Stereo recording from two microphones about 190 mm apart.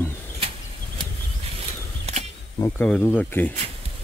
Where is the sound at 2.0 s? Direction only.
35° right (ahead or behind).